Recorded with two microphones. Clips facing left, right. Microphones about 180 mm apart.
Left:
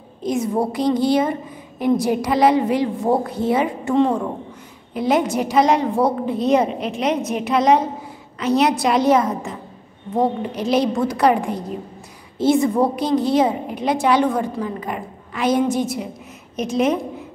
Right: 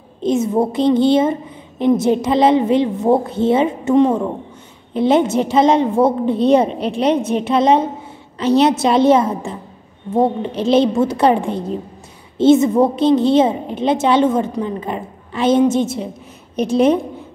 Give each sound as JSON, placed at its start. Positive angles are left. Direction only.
{"t": 0.2, "sound": "a woman's voice", "side_deg": -25}